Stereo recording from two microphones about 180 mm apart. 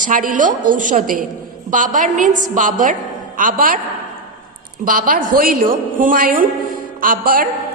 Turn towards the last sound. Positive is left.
turn(degrees=-50)  # may be behind; listen again after turning